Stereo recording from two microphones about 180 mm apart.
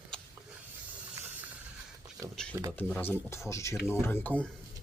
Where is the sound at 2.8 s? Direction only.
10° left (ahead or behind).